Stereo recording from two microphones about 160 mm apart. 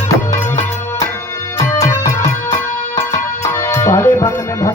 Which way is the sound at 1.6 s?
20° left (ahead or behind).